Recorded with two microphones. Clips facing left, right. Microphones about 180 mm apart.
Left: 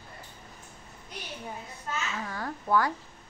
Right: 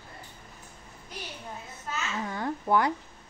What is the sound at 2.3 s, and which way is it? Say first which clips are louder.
Speech: right 4 dB; 20° right (ahead or behind).